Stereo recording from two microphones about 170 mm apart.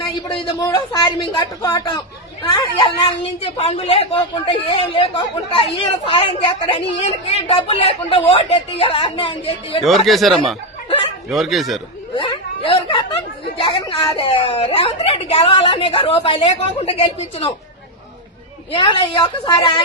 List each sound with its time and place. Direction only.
0.0 s speech: 30° left (ahead or behind)
10.1 s speech: centre (ahead or behind)
10.8 s chuckle: 30° left (ahead or behind)
11.3 s speech: centre (ahead or behind)
12.1 s a sound: 30° left (ahead or behind)
13.6 s speech: 30° left (ahead or behind)
18.7 s speech: 25° left (ahead or behind)